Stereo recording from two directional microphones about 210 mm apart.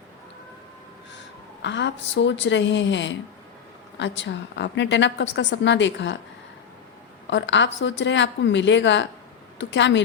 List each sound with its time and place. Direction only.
1.6 s a woman's voice: 55° left (ahead or behind)
7.3 s a woman's voice: 60° left (ahead or behind)